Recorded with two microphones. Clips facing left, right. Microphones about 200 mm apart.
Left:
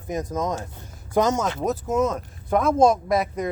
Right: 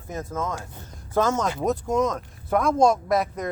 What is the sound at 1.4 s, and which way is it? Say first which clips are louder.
Speech: even; centre (ahead or behind).